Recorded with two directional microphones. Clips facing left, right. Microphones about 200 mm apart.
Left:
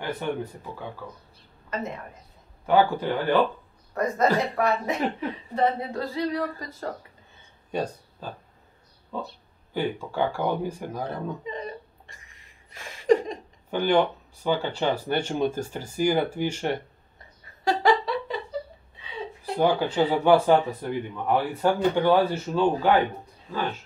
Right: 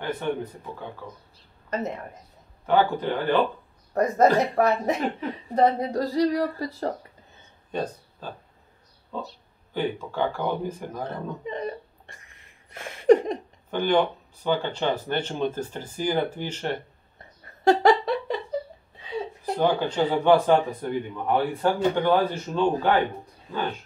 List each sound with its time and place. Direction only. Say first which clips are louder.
0.0 s speech: right 1 dB; 10° left (ahead or behind)
1.7 s a woman's voice: right 3 dB; 40° right (ahead or behind)
2.6 s speech: left 1 dB; 10° left (ahead or behind)
4.6 s speech: right 2 dB; 40° right (ahead or behind)
7.7 s a sound: left 1 dB; 10° left (ahead or behind)
9.8 s speech: even; 10° left (ahead or behind)
11.4 s a sound: right 3 dB; 55° right (ahead or behind)
13.7 s speech: even; 10° left (ahead or behind)
17.4 s a sound: right 6 dB; 45° right (ahead or behind)
19.5 s speech: left 1 dB; 10° left (ahead or behind)